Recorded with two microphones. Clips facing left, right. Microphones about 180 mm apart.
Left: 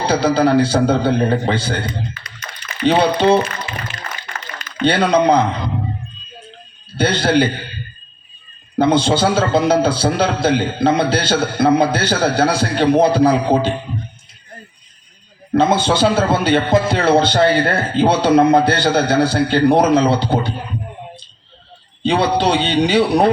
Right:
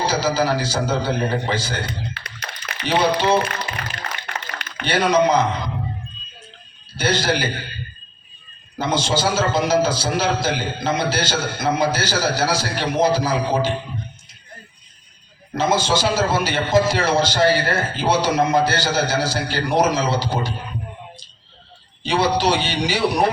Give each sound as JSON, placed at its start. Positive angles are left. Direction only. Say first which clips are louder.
{"t": 0.0, "sound": "a man's voice", "louder": "left 5 dB", "side_deg": 60}
{"t": 1.9, "sound": "a sound", "louder": "left 4 dB", "side_deg": -65}
{"t": 2.8, "sound": "a man's voice", "louder": "left 5 dB", "side_deg": 60}
{"t": 3.6, "sound": "a sound", "louder": "left 1 dB", "side_deg": -65}
{"t": 4.8, "sound": "a man's voice", "louder": "left 3 dB", "side_deg": 60}
{"t": 6.9, "sound": "a man's voice", "louder": "left 6 dB", "side_deg": 60}
{"t": 8.7, "sound": "a man's voice", "louder": "left 7 dB", "side_deg": 60}
{"t": 15.5, "sound": "a man's voice", "louder": "left 5 dB", "side_deg": 60}
{"t": 22.0, "sound": "a man's voice", "louder": "left 3 dB", "side_deg": 60}